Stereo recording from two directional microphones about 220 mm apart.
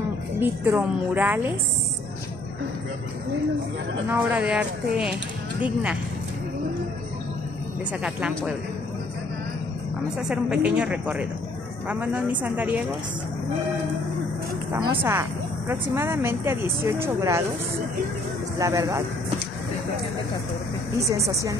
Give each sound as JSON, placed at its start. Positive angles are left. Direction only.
{"t": 0.4, "sound": "speech", "side_deg": -10}
{"t": 4.1, "sound": "speech", "side_deg": -5}
{"t": 8.0, "sound": "speech", "side_deg": -5}
{"t": 10.1, "sound": "speech", "side_deg": -5}
{"t": 14.7, "sound": "speech", "side_deg": -10}
{"t": 18.6, "sound": "speech", "side_deg": -15}
{"t": 21.3, "sound": "speech", "side_deg": -15}